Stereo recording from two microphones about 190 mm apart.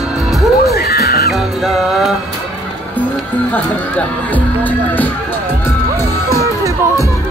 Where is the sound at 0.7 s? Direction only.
55° left (ahead or behind).